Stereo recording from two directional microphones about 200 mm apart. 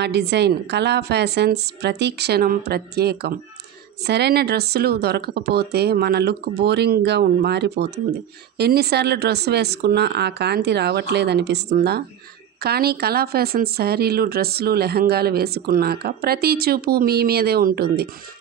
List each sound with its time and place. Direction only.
0.0 s speech: 55° right (ahead or behind)